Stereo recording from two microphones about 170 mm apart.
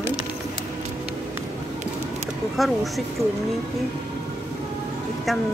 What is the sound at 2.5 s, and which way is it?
Speech, centre (ahead or behind).